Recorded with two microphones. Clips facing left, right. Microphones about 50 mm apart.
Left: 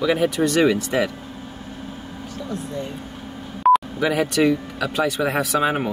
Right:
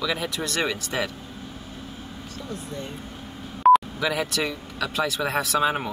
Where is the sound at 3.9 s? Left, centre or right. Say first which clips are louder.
Left 6 dB; left.